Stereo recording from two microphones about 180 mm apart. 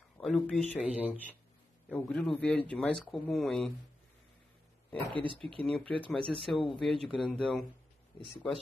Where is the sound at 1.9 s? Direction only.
5° left (ahead or behind).